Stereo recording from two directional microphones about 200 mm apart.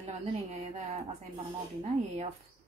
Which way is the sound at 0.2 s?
35° right (ahead or behind).